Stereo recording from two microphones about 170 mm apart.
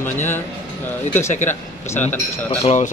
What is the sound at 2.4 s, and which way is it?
Speech, 40° left (ahead or behind).